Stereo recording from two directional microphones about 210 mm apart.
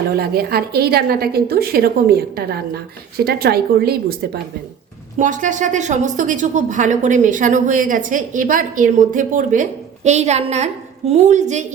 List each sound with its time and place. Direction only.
0.2 s a woman's voice: 45° right (ahead or behind)